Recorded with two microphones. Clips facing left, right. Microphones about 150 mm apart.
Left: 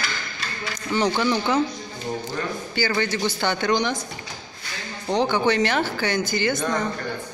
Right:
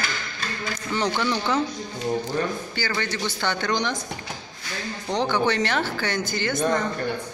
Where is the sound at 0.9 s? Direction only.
5° left (ahead or behind).